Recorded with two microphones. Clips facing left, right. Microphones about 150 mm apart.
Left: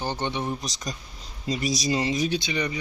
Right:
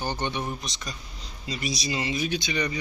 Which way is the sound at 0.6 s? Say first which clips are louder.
Left 3 dB; 40° left (ahead or behind).